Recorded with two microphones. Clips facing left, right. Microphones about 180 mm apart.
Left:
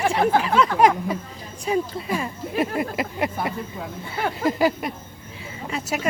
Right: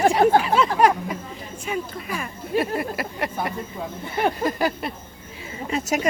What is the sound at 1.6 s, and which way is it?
Speech, 30° left (ahead or behind).